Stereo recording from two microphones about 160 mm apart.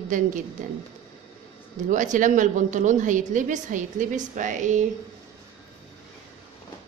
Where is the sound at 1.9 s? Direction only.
50° right (ahead or behind).